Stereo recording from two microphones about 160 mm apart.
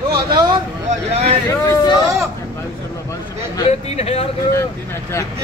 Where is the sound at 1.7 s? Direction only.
25° left (ahead or behind).